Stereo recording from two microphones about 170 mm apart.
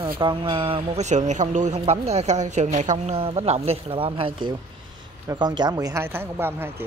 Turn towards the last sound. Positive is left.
turn(degrees=-15)  # may be behind; listen again after turning